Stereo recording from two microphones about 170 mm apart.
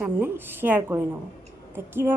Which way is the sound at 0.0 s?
10° right (ahead or behind).